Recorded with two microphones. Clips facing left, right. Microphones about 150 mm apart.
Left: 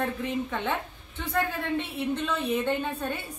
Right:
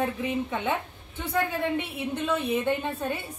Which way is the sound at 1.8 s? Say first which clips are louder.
Left 1 dB; 10° right (ahead or behind).